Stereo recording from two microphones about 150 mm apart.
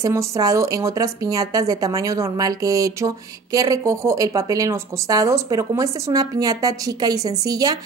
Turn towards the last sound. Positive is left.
turn(degrees=-25)  # may be behind; listen again after turning